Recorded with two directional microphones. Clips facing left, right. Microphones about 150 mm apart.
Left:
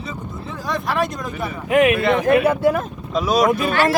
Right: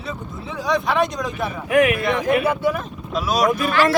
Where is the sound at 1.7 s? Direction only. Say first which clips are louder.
Left 1 dB; 25° left (ahead or behind).